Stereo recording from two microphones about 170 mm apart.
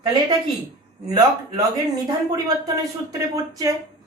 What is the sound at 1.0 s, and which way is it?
Speech, 20° right (ahead or behind).